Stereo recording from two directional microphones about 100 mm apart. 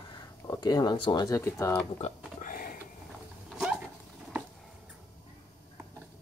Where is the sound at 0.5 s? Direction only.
40° left (ahead or behind).